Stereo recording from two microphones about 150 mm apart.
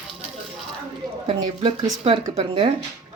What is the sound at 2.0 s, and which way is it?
Speech, 45° right (ahead or behind).